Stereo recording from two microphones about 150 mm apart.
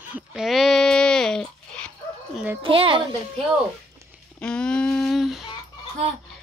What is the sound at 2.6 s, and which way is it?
Speech, 35° right (ahead or behind).